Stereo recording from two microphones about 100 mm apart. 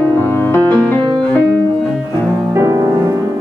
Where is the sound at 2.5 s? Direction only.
30° right (ahead or behind).